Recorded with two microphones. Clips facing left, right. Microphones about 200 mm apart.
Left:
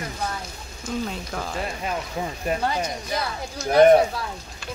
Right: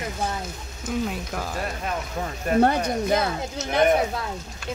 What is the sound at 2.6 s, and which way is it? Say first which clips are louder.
Speech: right 5 dB; 55° right (ahead or behind).